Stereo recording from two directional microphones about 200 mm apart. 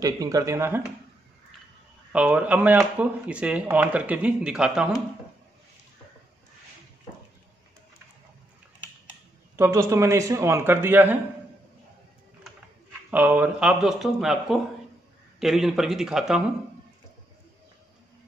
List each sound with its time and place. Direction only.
0.0 s speech: 15° right (ahead or behind)
2.1 s speech: 5° right (ahead or behind)
9.6 s speech: 15° right (ahead or behind)
13.1 s speech: 10° right (ahead or behind)